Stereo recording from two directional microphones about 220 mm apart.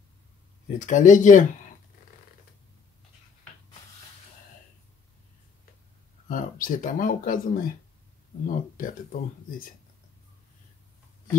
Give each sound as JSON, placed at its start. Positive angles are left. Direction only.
{"t": 0.7, "sound": "speech", "side_deg": 35}
{"t": 6.2, "sound": "speech", "side_deg": 40}